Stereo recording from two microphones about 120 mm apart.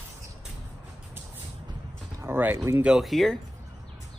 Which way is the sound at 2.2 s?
15° right (ahead or behind).